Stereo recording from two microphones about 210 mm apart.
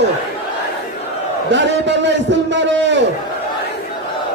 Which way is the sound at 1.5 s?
55° right (ahead or behind).